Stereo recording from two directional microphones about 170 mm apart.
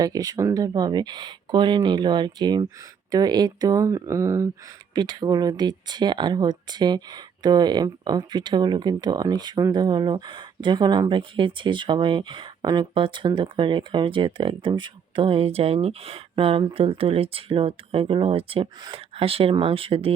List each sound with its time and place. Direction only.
0.0 s speech: 20° right (ahead or behind)